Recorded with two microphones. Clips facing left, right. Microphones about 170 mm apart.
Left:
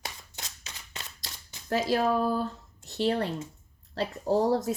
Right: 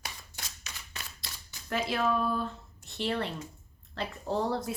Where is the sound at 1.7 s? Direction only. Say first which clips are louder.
Left 4 dB; 40° left (ahead or behind).